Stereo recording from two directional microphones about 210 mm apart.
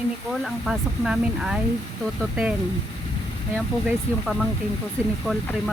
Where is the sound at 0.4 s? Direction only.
Centre (ahead or behind).